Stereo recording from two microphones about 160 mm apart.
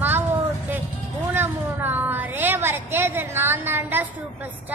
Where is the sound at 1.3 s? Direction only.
10° right (ahead or behind).